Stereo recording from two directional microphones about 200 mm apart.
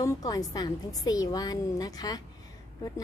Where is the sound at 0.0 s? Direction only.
20° left (ahead or behind).